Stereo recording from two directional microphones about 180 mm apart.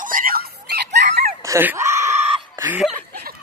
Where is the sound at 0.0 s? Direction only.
50° right (ahead or behind); by 1.2 s 70° right (ahead or behind).